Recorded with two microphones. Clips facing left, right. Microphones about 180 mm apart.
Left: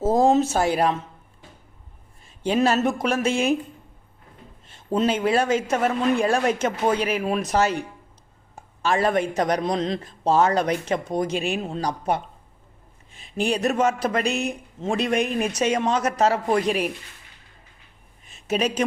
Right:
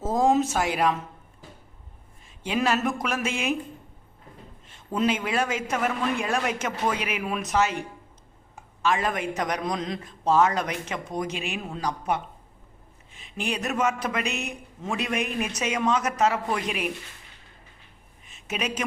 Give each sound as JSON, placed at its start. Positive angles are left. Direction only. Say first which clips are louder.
{"t": 0.0, "sound": "speech", "louder": "left 4 dB", "side_deg": 30}
{"t": 2.4, "sound": "a man's voice", "louder": "left 5 dB", "side_deg": 30}
{"t": 4.9, "sound": "a man's voice", "louder": "left 4 dB", "side_deg": 30}
{"t": 18.4, "sound": "a man's voice", "louder": "left 7 dB", "side_deg": 35}